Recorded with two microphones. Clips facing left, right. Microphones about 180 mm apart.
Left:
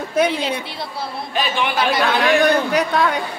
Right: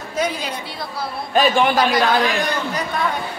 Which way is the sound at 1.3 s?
45° right (ahead or behind).